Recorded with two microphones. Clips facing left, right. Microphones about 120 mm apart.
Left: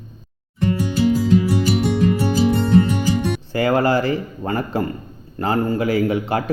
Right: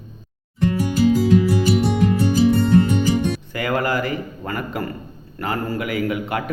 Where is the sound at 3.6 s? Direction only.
30° left (ahead or behind).